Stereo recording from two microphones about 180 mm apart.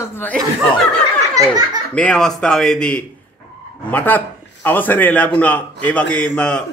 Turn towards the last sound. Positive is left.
turn(degrees=5)  # may be behind; listen again after turning